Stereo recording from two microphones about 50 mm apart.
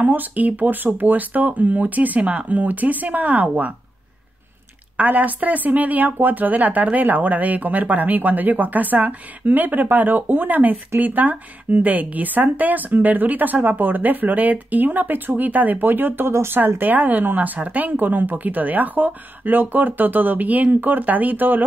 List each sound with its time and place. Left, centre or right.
0.0 s a woman's voice: right
4.9 s a woman's voice: right
16.3 s a woman's voice: right